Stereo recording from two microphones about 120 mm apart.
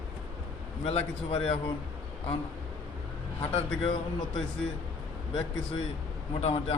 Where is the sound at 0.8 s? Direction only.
55° left (ahead or behind).